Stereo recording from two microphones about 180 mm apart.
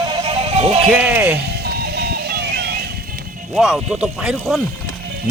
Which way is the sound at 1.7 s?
65° right (ahead or behind).